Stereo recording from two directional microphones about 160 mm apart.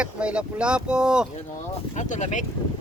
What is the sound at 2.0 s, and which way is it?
Speech, 50° left (ahead or behind).